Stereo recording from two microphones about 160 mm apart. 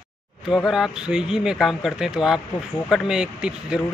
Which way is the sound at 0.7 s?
5° right (ahead or behind).